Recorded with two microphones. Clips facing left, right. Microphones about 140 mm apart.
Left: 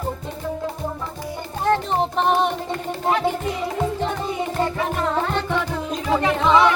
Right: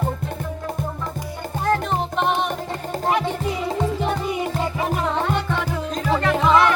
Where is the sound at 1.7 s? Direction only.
35° left (ahead or behind).